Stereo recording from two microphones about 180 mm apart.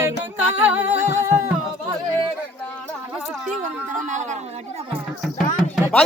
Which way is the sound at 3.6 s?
45° right (ahead or behind).